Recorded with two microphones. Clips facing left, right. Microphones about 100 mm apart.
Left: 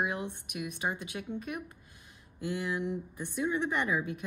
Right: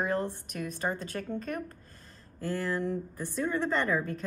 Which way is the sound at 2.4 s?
15° left (ahead or behind).